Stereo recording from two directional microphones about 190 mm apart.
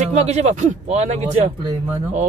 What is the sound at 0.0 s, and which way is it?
Speech, 35° right (ahead or behind).